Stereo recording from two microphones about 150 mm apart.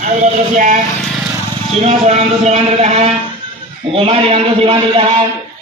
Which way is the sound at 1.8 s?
45° right (ahead or behind).